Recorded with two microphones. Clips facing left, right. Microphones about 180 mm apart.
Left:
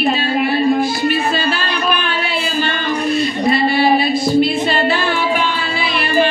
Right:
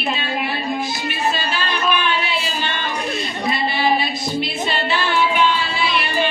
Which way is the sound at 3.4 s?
55° left (ahead or behind).